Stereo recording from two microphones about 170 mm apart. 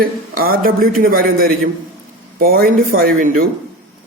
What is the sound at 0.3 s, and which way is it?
A man's voice, 60° right (ahead or behind).